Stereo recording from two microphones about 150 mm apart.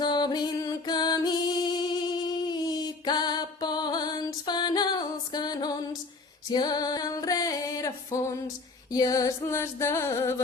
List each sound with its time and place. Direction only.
0.0 s music: 30° left (ahead or behind)